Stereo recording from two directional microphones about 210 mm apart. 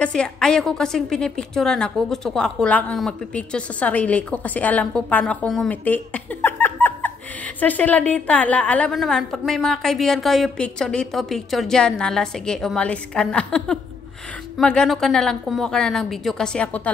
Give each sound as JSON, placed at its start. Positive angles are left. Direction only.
{"t": 0.0, "sound": "a woman's voice", "side_deg": 5}